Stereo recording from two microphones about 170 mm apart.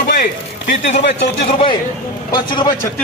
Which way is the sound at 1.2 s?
35° left (ahead or behind).